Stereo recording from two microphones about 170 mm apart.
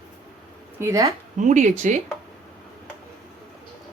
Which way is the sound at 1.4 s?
45° right (ahead or behind).